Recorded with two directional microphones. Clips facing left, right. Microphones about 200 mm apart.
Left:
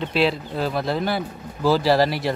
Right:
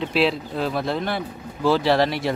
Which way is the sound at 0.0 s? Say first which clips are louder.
Even; centre (ahead or behind).